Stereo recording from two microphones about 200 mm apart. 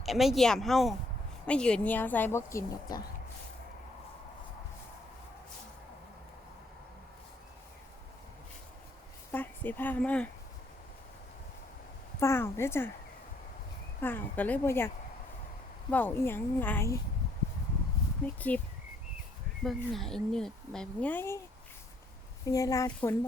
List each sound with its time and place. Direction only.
0.0 s a woman's voice: centre (ahead or behind)
9.3 s speech: 10° left (ahead or behind)
12.2 s a woman's voice: 15° left (ahead or behind)
14.0 s a woman's voice: 10° left (ahead or behind)
15.9 s a woman's voice: 10° left (ahead or behind)
18.3 s a woman's voice: 5° left (ahead or behind)
19.6 s speech: centre (ahead or behind)
22.4 s a woman's voice: 15° left (ahead or behind)